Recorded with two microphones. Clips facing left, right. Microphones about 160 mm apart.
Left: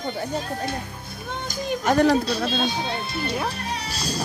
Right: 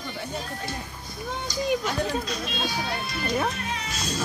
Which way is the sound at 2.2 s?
30° left (ahead or behind).